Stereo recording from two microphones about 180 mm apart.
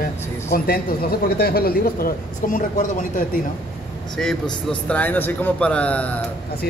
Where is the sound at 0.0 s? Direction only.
55° left (ahead or behind).